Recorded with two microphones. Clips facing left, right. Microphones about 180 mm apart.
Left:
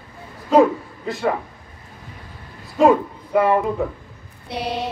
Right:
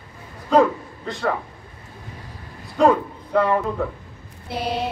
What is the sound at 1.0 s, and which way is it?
Music, 5° left (ahead or behind).